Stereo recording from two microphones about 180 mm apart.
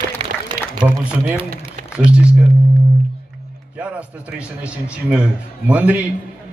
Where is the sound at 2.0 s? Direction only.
5° right (ahead or behind).